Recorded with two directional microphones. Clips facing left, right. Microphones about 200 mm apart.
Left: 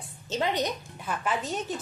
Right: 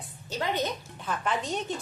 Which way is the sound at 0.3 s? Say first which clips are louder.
Left 2 dB; 20° left (ahead or behind).